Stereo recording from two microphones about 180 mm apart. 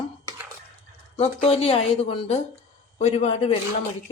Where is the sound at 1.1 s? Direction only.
35° left (ahead or behind).